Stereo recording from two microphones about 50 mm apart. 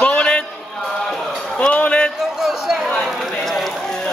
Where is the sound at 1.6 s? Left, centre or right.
Left.